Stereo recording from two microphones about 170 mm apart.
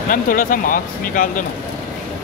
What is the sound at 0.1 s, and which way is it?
Speech, 55° left (ahead or behind).